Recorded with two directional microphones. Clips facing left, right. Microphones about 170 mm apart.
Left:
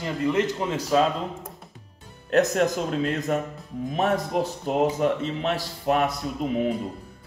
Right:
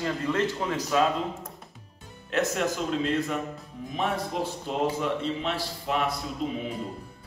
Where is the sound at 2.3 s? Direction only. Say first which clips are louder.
Left 6 dB; 45° left (ahead or behind).